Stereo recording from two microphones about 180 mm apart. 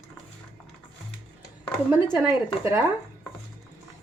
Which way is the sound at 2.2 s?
15° right (ahead or behind).